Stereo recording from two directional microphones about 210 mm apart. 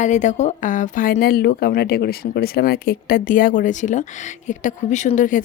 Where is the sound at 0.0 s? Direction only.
35° left (ahead or behind).